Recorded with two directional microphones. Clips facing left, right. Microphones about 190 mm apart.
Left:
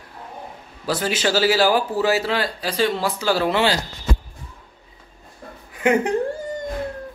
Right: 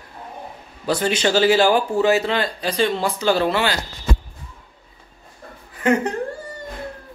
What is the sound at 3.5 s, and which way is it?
Speech, 25° left (ahead or behind).